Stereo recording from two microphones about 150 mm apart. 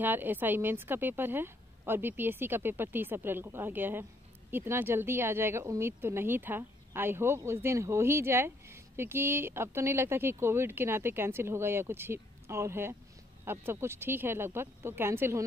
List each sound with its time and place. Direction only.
0.0 s speech: 15° right (ahead or behind)